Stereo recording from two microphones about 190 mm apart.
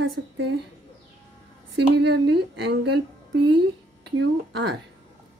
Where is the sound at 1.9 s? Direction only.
65° right (ahead or behind).